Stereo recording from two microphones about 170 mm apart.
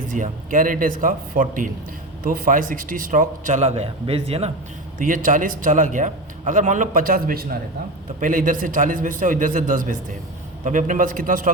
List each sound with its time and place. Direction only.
0.1 s a man's voice: 50° right (ahead or behind)
4.9 s a man's voice: 55° right (ahead or behind)